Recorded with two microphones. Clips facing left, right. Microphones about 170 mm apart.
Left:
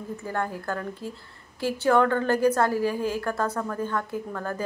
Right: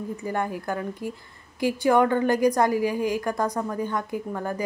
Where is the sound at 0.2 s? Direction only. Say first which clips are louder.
Right 1 dB; 15° right (ahead or behind).